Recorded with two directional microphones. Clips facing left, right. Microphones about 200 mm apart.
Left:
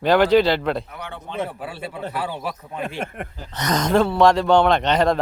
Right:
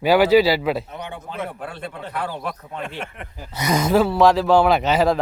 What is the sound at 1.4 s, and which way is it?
A man's voice, 5° left (ahead or behind).